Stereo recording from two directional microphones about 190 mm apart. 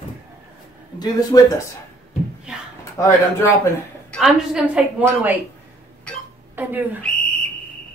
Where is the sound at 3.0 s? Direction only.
15° left (ahead or behind).